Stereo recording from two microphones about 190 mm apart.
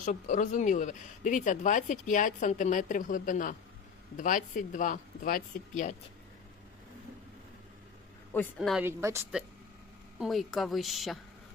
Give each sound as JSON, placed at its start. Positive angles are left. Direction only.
{"t": 0.0, "sound": "speech", "side_deg": 40}
{"t": 8.5, "sound": "a woman's voice", "side_deg": 0}
{"t": 8.9, "sound": "speech", "side_deg": -15}
{"t": 10.2, "sound": "a woman's voice", "side_deg": 0}